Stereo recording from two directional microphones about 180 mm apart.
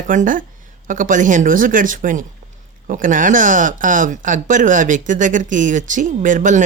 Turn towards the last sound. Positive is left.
turn(degrees=-45)  # may be behind; listen again after turning